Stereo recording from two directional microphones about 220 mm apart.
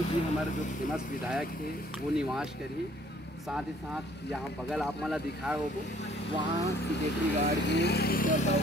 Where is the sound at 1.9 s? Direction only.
5° right (ahead or behind).